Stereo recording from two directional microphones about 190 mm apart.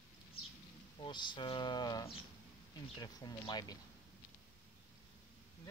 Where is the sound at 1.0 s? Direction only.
25° left (ahead or behind).